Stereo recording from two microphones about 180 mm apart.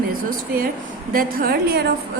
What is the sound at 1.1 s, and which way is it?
Speech, 55° right (ahead or behind).